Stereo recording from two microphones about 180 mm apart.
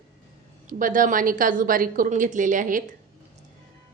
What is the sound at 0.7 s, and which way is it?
A woman's voice, 45° right (ahead or behind).